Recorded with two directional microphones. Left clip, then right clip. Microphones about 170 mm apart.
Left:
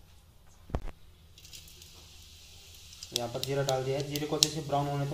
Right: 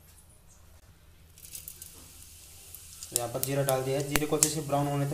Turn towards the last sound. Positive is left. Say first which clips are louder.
# right 2 dB
turn(degrees=-20)  # may be behind; listen again after turning